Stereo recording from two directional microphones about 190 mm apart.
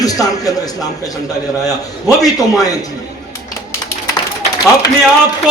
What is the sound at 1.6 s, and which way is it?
Speech, 20° left (ahead or behind).